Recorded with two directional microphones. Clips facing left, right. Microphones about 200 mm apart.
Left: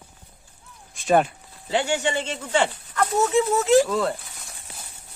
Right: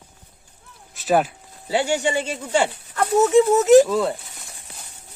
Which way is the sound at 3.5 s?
20° right (ahead or behind).